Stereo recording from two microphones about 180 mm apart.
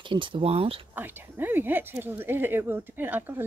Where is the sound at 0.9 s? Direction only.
10° right (ahead or behind).